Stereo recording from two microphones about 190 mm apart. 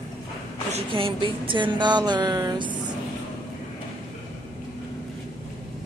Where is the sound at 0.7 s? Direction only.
25° right (ahead or behind).